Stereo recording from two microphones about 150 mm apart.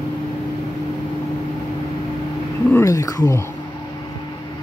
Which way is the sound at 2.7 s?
20° left (ahead or behind).